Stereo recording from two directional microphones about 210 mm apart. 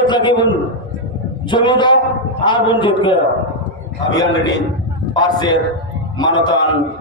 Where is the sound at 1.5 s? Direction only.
20° left (ahead or behind).